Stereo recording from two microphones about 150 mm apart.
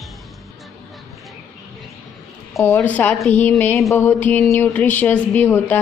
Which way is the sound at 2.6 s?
15° left (ahead or behind).